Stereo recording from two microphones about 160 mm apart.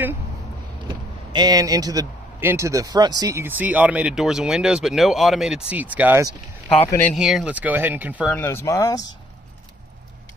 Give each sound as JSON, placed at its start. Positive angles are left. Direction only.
{"t": 0.8, "sound": "speech", "side_deg": -25}
{"t": 8.3, "sound": "speech", "side_deg": 15}